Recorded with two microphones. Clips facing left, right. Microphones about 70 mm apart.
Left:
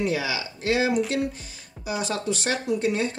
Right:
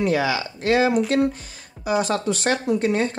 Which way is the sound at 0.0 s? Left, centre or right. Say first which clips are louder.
Right 5 dB; right.